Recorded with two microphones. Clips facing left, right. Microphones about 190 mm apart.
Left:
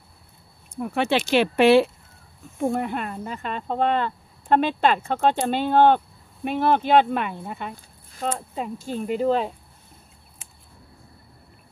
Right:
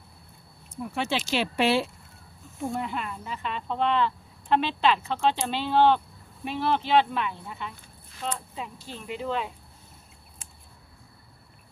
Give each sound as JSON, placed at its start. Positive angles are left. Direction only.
{"t": 0.7, "sound": "speech", "side_deg": 60}